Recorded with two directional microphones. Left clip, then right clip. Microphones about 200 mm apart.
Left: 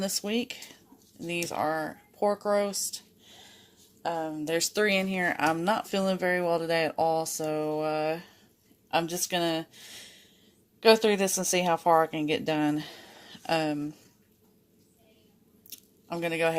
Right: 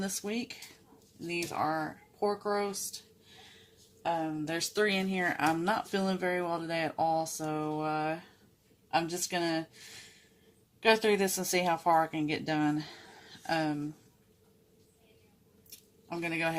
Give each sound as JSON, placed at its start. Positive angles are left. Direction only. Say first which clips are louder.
{"t": 0.0, "sound": "speech", "louder": "left 6 dB", "side_deg": 45}
{"t": 4.0, "sound": "speech", "louder": "left 1 dB", "side_deg": 50}
{"t": 10.8, "sound": "a woman's voice", "louder": "left 5 dB", "side_deg": 40}
{"t": 16.0, "sound": "speech", "louder": "left 5 dB", "side_deg": 45}